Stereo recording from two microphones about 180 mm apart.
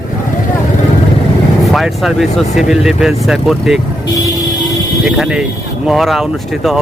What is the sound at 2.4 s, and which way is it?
Speech, 40° left (ahead or behind).